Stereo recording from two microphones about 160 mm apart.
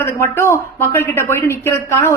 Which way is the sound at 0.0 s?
15° left (ahead or behind).